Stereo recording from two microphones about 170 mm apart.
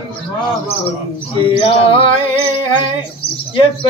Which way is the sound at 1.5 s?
30° left (ahead or behind).